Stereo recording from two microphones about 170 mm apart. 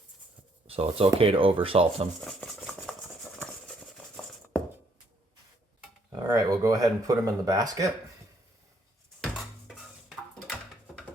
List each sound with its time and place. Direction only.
0.7 s speech: 35° right (ahead or behind)
2.9 s stir: 5° left (ahead or behind)
3.3 s a sound: 5° left (ahead or behind)
6.1 s speech: 20° right (ahead or behind)
9.2 s dishes: centre (ahead or behind)